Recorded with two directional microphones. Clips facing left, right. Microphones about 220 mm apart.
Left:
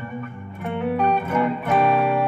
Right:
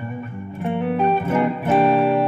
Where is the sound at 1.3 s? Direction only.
30° right (ahead or behind).